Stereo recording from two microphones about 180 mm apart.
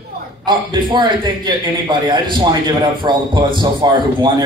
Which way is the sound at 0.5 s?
25° right (ahead or behind).